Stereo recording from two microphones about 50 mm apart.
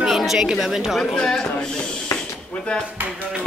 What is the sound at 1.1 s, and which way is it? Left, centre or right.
Speech, centre.